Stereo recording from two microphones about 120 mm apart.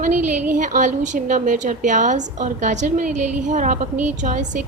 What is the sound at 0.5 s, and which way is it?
A woman's voice, 90° right.